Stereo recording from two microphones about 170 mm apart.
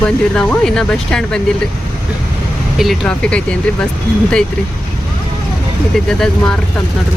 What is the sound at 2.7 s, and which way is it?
Speech, centre (ahead or behind).